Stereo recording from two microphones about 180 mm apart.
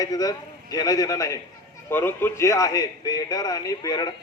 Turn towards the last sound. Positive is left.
turn(degrees=20)  # may be behind; listen again after turning